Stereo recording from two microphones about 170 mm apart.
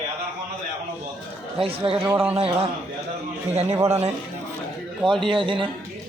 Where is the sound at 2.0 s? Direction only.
15° right (ahead or behind).